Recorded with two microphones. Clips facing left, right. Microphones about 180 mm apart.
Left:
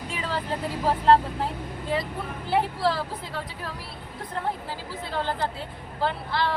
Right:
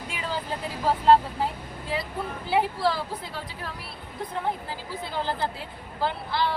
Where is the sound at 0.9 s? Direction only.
5° right (ahead or behind).